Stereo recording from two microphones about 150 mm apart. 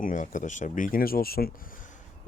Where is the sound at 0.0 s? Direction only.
60° left (ahead or behind).